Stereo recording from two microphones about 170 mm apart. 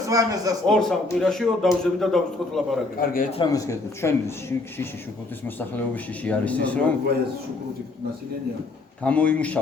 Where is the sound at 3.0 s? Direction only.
55° left (ahead or behind).